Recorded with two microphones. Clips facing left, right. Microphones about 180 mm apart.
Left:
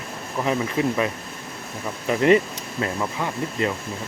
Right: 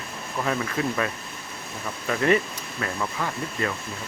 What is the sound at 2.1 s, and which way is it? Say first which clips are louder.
Speech: left 5 dB; 20° left (ahead or behind).